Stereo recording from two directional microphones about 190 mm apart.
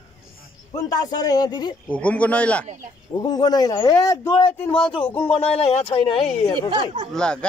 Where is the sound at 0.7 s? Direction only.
20° left (ahead or behind).